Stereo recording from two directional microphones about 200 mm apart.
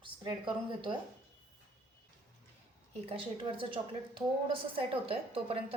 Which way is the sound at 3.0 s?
30° right (ahead or behind).